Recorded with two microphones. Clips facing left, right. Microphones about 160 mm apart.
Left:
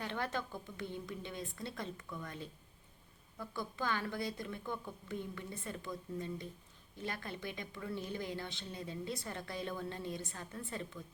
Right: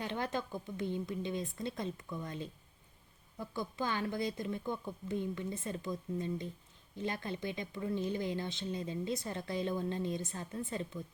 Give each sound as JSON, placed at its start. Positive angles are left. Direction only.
{"t": 0.0, "sound": "a woman's voice", "side_deg": -20}